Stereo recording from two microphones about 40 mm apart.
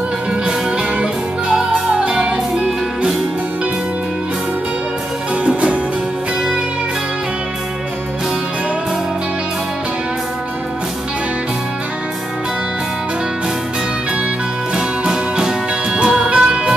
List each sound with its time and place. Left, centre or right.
1.7 s music: right
5.3 s music: right
14.8 s music: centre